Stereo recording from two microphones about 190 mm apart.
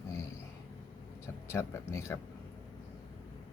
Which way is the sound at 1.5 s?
15° left (ahead or behind).